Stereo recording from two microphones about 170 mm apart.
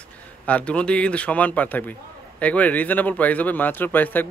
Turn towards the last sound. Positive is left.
turn(degrees=10)  # may be behind; listen again after turning